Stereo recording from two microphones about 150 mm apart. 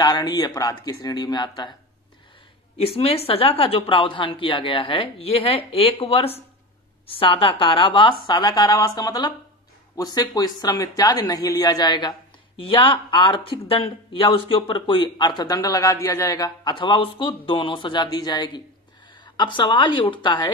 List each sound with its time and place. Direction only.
0.0 s speech: 30° left (ahead or behind)
2.8 s speech: 40° left (ahead or behind)